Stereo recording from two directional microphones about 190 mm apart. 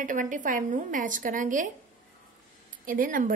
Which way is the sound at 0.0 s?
45° right (ahead or behind).